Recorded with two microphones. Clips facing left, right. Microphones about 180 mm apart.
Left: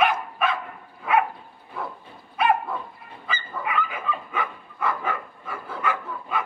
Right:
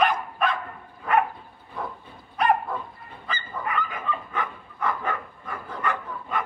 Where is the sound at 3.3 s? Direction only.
5° left (ahead or behind).